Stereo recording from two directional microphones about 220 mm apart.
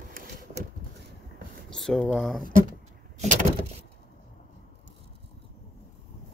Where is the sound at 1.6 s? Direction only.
Centre (ahead or behind).